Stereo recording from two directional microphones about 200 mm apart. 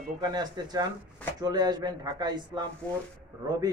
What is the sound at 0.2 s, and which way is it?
A man's voice, 20° right (ahead or behind).